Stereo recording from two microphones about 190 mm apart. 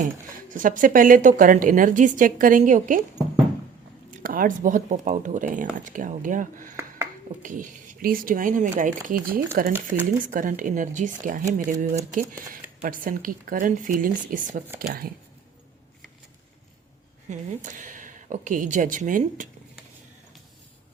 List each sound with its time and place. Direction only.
0.4 s a woman's voice: 45° right (ahead or behind)
4.2 s a woman's voice: 45° right (ahead or behind)
17.2 s a woman's voice: 40° right (ahead or behind)